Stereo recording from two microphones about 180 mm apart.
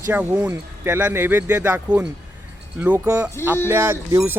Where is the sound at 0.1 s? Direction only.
10° right (ahead or behind).